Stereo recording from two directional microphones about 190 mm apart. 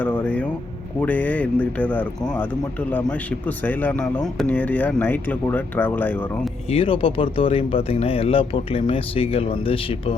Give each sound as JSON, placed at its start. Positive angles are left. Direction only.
{"t": 0.0, "sound": "a sound", "side_deg": 10}
{"t": 1.0, "sound": "a man's voice", "side_deg": 10}
{"t": 6.7, "sound": "speech", "side_deg": 30}